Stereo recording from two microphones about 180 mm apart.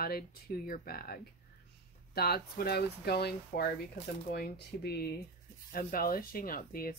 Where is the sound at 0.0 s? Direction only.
60° left (ahead or behind).